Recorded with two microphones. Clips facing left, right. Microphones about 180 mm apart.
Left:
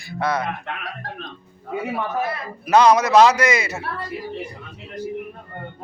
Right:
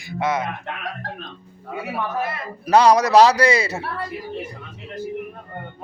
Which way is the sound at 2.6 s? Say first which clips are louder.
Even; 35° right (ahead or behind).